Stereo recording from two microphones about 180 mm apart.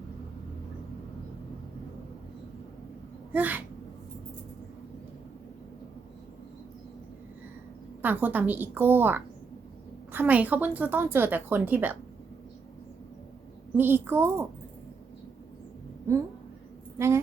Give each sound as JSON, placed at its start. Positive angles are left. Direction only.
{"t": 3.3, "sound": "a woman's voice", "side_deg": -10}
{"t": 8.0, "sound": "a woman's voice", "side_deg": -10}
{"t": 13.7, "sound": "a woman's voice", "side_deg": -10}
{"t": 16.1, "sound": "a woman's voice", "side_deg": -15}